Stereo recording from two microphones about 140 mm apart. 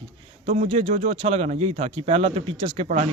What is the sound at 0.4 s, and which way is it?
Speech, 55° right (ahead or behind).